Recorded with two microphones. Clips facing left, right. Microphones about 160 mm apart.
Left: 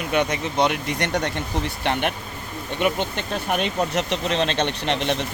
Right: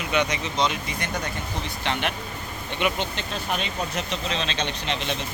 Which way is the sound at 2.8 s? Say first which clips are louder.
Left 3 dB; 55° left (ahead or behind).